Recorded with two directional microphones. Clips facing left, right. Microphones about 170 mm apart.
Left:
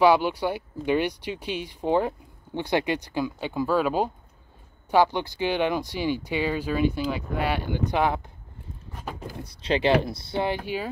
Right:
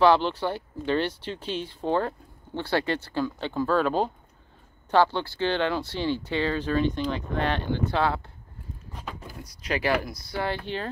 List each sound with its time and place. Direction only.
0.0 s speech: 10° left (ahead or behind)
9.4 s speech: 30° left (ahead or behind); by 10.9 s 10° left (ahead or behind)